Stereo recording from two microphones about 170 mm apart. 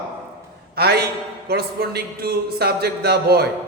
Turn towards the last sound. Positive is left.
turn(degrees=-70)  # may be behind; listen again after turning